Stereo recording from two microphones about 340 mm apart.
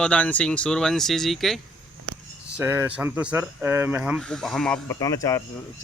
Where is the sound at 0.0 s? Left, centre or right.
Centre.